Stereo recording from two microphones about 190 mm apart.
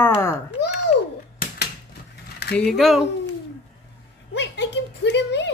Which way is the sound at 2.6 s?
Centre (ahead or behind).